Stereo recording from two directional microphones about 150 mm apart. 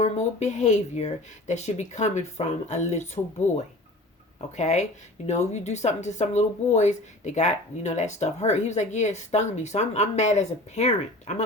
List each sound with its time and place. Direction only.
0.0 s speech: 50° left (ahead or behind)